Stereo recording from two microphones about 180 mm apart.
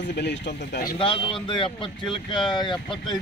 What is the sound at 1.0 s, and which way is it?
Speech, 30° left (ahead or behind).